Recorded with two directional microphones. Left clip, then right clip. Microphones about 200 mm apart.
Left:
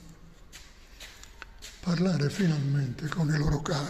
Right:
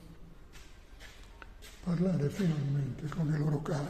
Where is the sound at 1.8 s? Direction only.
15° left (ahead or behind).